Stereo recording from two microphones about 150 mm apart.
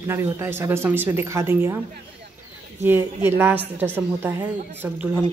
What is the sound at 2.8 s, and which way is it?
Speech, 15° right (ahead or behind).